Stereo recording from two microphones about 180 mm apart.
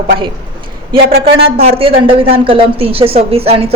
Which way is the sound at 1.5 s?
35° right (ahead or behind).